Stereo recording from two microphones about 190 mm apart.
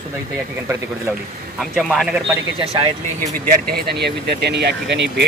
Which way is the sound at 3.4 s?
55° right (ahead or behind).